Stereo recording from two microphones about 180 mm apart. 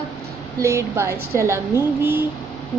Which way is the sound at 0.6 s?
15° right (ahead or behind).